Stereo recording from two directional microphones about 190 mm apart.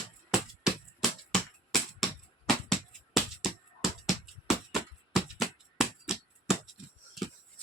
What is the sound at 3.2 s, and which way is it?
Music, centre (ahead or behind).